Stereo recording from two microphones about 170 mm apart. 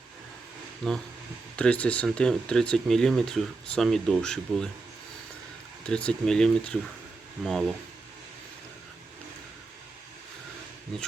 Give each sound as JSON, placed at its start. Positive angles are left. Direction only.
{"t": 0.8, "sound": "speech", "side_deg": 0}
{"t": 5.8, "sound": "speech", "side_deg": 5}